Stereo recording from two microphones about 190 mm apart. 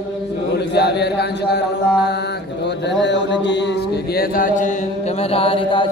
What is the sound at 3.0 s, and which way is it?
Mantra, 70° left (ahead or behind).